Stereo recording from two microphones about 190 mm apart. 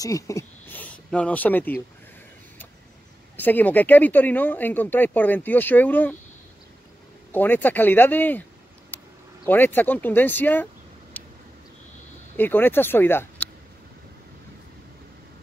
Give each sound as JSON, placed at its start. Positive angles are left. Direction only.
{"t": 0.0, "sound": "speech", "side_deg": 15}
{"t": 3.3, "sound": "speech", "side_deg": 10}
{"t": 7.3, "sound": "speech", "side_deg": 10}
{"t": 9.5, "sound": "speech", "side_deg": 10}
{"t": 11.1, "sound": "a sound", "side_deg": 10}
{"t": 12.4, "sound": "speech", "side_deg": 10}